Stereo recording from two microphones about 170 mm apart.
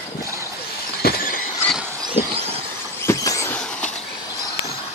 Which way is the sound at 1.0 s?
55° left (ahead or behind).